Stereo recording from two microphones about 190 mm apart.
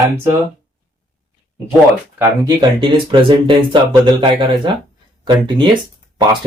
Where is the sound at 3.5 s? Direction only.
25° right (ahead or behind).